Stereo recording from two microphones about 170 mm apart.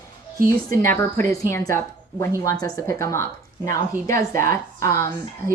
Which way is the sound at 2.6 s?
15° left (ahead or behind).